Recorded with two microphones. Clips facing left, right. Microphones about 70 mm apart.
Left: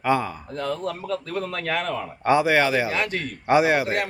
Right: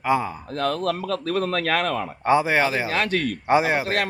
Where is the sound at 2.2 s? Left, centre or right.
Right.